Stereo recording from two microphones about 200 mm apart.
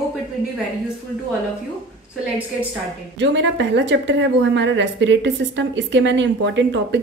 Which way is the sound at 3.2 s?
65° right (ahead or behind).